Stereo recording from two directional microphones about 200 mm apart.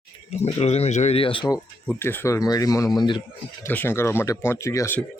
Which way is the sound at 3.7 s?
10° left (ahead or behind).